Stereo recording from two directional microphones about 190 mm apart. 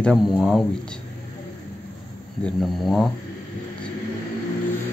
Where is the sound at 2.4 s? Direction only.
Centre (ahead or behind).